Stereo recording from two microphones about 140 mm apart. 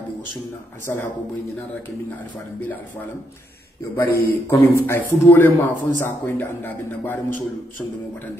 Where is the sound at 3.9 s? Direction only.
20° left (ahead or behind).